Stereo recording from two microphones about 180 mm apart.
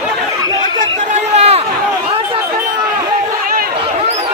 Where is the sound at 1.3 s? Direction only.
35° right (ahead or behind).